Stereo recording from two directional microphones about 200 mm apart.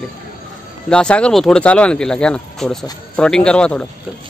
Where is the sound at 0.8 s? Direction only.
5° left (ahead or behind).